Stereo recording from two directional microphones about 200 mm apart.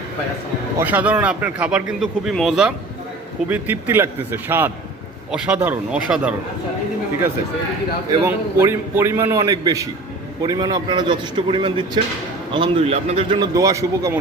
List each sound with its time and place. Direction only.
0.8 s a man's voice: 10° right (ahead or behind)
8.2 s a man's voice: 10° right (ahead or behind)